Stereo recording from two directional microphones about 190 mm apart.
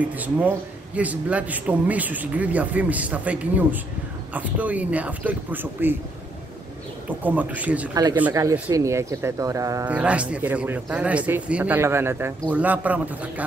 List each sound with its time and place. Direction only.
0.0 s speech: 10° right (ahead or behind)
7.1 s speech: 10° right (ahead or behind)
7.9 s speech: 20° right (ahead or behind)